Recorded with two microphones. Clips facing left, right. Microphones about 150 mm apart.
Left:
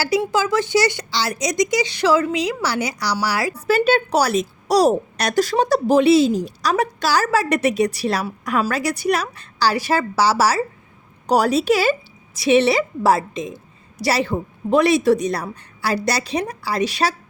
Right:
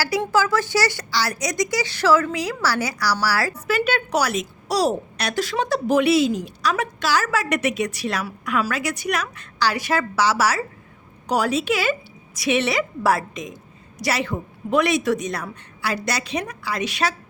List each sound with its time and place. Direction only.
0.2 s speech: 20° left (ahead or behind)
3.5 s a woman's voice: 30° left (ahead or behind)